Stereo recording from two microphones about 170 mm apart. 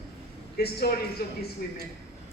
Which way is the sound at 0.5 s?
65° left (ahead or behind).